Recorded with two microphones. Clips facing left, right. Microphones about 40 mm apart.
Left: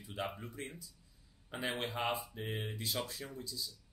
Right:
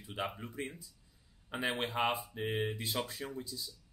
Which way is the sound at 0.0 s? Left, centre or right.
Right.